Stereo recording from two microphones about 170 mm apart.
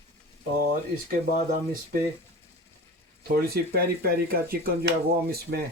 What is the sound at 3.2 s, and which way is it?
Speech, 60° right (ahead or behind).